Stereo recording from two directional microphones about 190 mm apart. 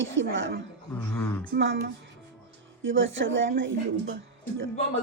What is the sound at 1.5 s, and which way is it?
Speech, 55° right (ahead or behind).